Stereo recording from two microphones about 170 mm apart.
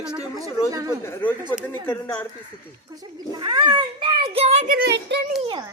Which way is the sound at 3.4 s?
25° right (ahead or behind).